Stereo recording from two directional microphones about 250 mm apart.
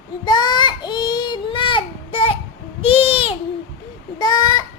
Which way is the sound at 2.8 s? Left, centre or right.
Left.